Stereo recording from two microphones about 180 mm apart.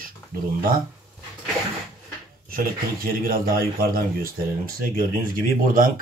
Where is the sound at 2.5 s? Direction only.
55° right (ahead or behind).